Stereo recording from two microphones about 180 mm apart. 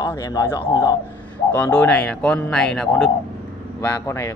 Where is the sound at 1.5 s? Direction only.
10° left (ahead or behind).